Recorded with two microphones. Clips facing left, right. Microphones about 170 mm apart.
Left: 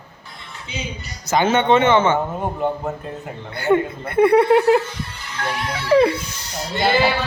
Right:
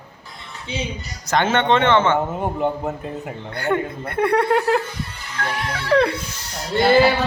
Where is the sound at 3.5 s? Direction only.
5° left (ahead or behind).